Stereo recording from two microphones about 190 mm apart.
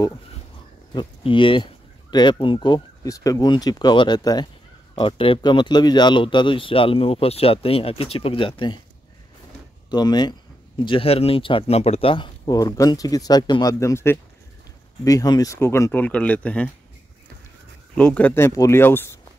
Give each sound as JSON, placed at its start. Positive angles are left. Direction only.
{"t": 0.9, "sound": "speech", "side_deg": 25}
{"t": 9.8, "sound": "speech", "side_deg": 20}
{"t": 17.9, "sound": "speech", "side_deg": 5}